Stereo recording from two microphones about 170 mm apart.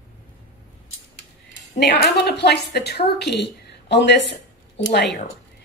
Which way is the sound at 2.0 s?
75° left (ahead or behind).